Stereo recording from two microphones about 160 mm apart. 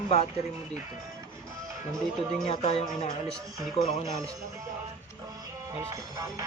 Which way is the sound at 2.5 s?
40° left (ahead or behind).